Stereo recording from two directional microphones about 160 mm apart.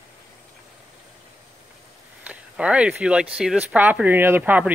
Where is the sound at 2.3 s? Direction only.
5° right (ahead or behind).